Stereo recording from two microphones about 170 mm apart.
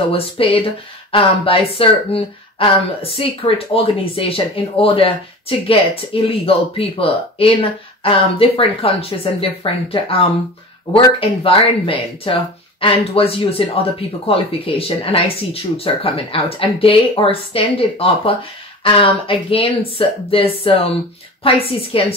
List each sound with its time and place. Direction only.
0.1 s speech: 35° left (ahead or behind)